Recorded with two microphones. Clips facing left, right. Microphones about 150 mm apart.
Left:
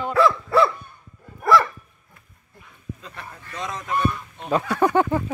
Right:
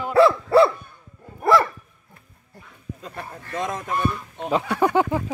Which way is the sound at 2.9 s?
45° right (ahead or behind).